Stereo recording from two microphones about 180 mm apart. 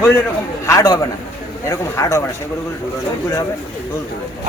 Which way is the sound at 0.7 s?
20° left (ahead or behind).